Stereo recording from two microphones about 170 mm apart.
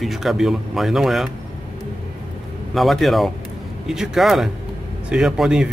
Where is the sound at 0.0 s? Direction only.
Centre (ahead or behind).